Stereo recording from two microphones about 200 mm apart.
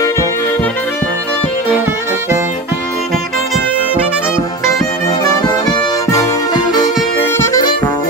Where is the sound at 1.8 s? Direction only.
15° right (ahead or behind).